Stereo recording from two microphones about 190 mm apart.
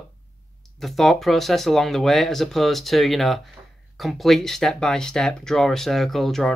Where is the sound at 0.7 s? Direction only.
Centre (ahead or behind).